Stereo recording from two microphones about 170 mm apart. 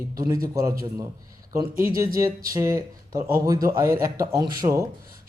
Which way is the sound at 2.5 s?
20° right (ahead or behind).